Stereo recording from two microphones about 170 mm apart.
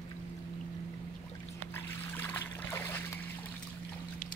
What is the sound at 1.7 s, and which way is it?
Trickle, 10° left (ahead or behind).